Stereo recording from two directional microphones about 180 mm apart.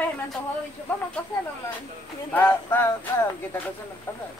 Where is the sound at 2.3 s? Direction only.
10° left (ahead or behind).